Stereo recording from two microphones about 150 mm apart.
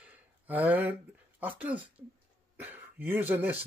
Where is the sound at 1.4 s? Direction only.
10° right (ahead or behind).